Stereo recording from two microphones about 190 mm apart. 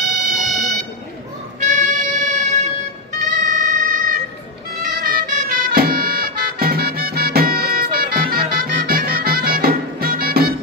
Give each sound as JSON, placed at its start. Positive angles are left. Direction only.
{"t": 0.3, "sound": "air horn", "side_deg": 0}
{"t": 1.6, "sound": "music", "side_deg": -40}